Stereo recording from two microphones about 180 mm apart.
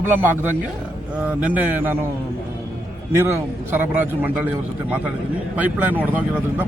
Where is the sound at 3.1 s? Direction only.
10° right (ahead or behind).